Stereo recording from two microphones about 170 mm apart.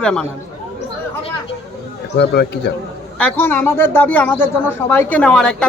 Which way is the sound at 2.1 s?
75° left (ahead or behind).